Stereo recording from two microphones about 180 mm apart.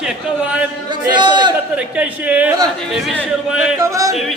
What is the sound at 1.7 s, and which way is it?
A man's voice, 5° right (ahead or behind).